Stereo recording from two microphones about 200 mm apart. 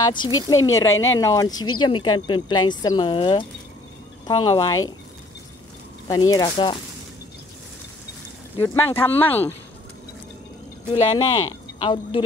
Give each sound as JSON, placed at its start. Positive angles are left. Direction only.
{"t": 0.0, "sound": "speech", "side_deg": 25}
{"t": 0.9, "sound": "speech", "side_deg": 75}
{"t": 1.2, "sound": "speech", "side_deg": 20}
{"t": 6.0, "sound": "speech", "side_deg": 20}
{"t": 8.5, "sound": "speech", "side_deg": 10}
{"t": 11.0, "sound": "speech", "side_deg": 25}